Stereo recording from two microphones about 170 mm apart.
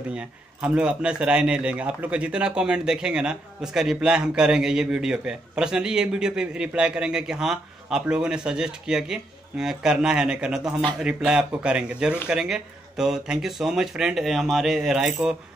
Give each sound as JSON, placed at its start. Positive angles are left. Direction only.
{"t": 0.1, "sound": "a man's voice", "side_deg": -5}